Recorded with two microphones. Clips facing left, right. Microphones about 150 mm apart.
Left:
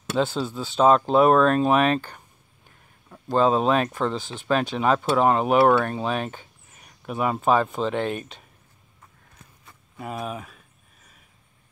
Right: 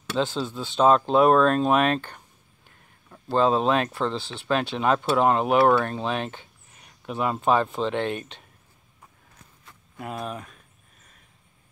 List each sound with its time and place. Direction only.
0.2 s speech: 10° left (ahead or behind)
3.3 s speech: 5° left (ahead or behind)
4.3 s speech: 40° left (ahead or behind)
4.7 s speech: centre (ahead or behind)
9.7 s a sound: centre (ahead or behind)